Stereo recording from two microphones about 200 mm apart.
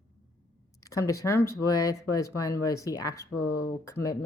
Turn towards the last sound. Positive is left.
turn(degrees=15)  # may be behind; listen again after turning